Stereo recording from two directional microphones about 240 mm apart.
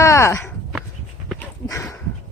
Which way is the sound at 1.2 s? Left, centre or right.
Centre.